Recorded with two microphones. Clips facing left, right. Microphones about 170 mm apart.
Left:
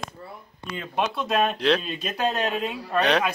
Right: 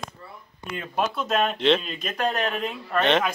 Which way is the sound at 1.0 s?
Centre (ahead or behind).